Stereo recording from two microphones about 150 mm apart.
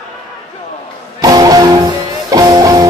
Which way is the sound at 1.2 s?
25° right (ahead or behind).